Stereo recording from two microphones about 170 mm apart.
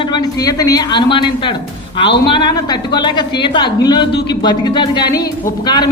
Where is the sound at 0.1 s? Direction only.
25° left (ahead or behind).